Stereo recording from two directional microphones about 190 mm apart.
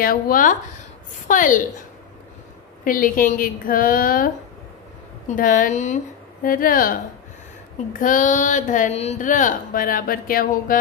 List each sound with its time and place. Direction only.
0.0 s speech: 45° left (ahead or behind)
2.8 s speech: 45° left (ahead or behind)
5.3 s a woman's voice: 45° left (ahead or behind)
8.0 s speech: 45° left (ahead or behind)